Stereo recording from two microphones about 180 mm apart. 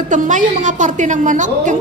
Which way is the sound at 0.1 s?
45° right (ahead or behind).